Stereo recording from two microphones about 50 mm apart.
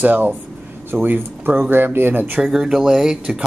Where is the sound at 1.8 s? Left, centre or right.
Right.